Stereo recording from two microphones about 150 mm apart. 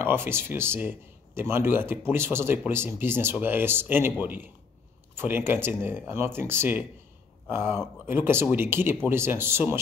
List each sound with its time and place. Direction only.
0.0 s speech: 15° right (ahead or behind)